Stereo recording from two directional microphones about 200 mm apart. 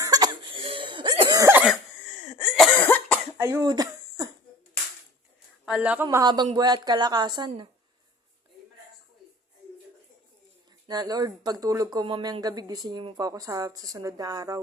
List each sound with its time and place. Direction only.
0.0 s cough: 20° right (ahead or behind)
1.4 s cough: 15° right (ahead or behind)
2.1 s cough: centre (ahead or behind)
3.3 s a sound: 15° right (ahead or behind)
5.6 s speech: 5° right (ahead or behind); by 7.7 s 20° right (ahead or behind)
10.8 s speech: 20° right (ahead or behind)